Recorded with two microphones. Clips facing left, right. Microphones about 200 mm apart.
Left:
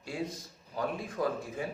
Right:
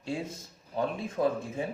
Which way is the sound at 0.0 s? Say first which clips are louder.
Right 2 dB; 25° right (ahead or behind).